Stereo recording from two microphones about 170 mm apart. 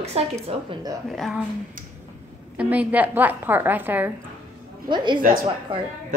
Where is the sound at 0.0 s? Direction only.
35° right (ahead or behind).